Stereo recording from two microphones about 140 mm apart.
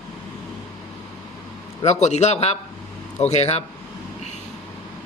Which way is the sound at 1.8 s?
55° left (ahead or behind).